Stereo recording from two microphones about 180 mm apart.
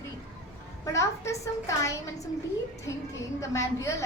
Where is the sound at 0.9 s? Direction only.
15° left (ahead or behind).